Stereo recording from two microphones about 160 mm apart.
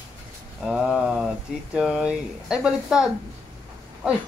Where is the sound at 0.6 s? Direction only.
5° right (ahead or behind).